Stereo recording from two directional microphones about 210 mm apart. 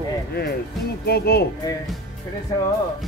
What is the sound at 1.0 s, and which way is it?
Speech, 50° left (ahead or behind).